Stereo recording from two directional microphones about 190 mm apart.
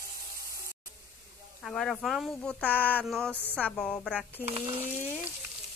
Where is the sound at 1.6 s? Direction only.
Centre (ahead or behind).